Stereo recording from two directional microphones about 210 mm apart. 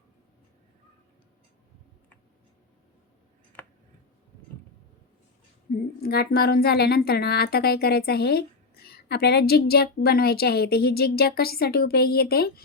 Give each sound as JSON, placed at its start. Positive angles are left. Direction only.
{"t": 6.0, "sound": "a woman's voice", "side_deg": 45}